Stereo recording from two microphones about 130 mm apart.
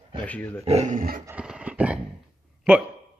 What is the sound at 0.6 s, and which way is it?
Speech, 55° right (ahead or behind).